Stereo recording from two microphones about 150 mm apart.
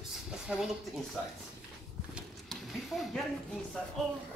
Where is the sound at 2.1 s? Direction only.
Centre (ahead or behind).